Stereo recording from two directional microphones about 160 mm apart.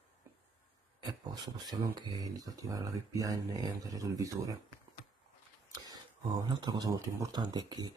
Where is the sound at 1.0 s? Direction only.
25° right (ahead or behind).